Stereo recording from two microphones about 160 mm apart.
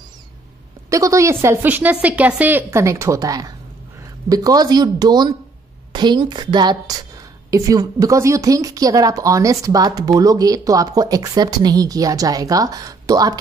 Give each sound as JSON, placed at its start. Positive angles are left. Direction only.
{"t": 0.8, "sound": "a woman's voice", "side_deg": -20}